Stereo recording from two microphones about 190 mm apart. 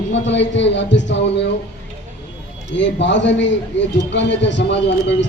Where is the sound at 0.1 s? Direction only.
70° left (ahead or behind).